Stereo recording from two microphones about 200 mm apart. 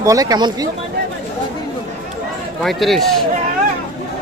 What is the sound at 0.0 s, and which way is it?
Speech, 15° right (ahead or behind).